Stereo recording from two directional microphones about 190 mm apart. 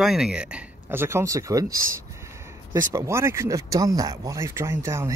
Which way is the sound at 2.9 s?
15° right (ahead or behind).